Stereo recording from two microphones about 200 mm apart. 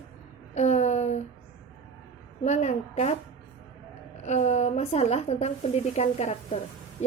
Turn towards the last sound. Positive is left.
turn(degrees=35)  # may be behind; listen again after turning